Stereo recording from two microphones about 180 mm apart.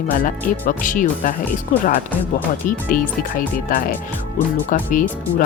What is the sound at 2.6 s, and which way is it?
Speech, 50° left (ahead or behind).